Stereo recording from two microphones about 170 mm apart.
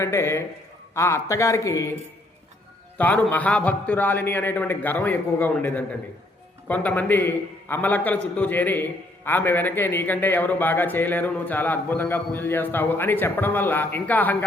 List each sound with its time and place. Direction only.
0.0 s a man's voice: 15° left (ahead or behind)
3.0 s a man's voice: 10° left (ahead or behind)